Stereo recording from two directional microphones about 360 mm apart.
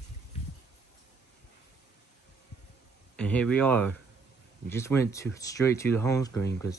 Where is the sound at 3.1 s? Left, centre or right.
Centre.